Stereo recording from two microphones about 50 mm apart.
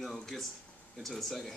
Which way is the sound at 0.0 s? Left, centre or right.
Centre.